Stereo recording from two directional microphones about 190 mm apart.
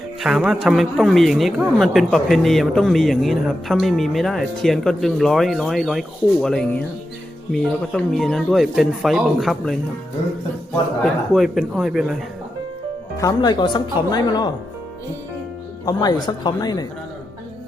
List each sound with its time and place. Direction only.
0.2 s speech: centre (ahead or behind)
11.0 s speech: centre (ahead or behind)
13.1 s speech: 20° left (ahead or behind)
15.9 s speech: 20° left (ahead or behind)